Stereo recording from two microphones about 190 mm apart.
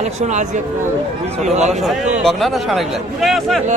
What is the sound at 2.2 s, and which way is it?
Speech, centre (ahead or behind).